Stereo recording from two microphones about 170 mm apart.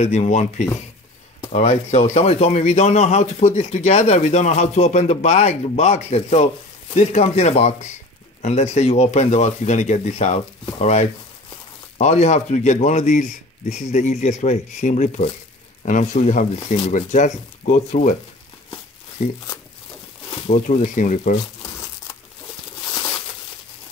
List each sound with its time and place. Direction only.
0.0 s a man's voice: 40° left (ahead or behind)
20.4 s a man's voice: 40° left (ahead or behind)